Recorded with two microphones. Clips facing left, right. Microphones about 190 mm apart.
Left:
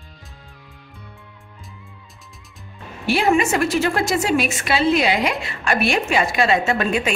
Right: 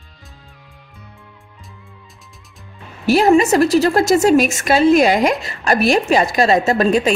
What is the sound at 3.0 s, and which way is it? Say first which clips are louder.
Speech: right 6 dB; 40° right (ahead or behind).